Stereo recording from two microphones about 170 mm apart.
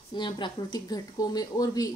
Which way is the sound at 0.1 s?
25° left (ahead or behind).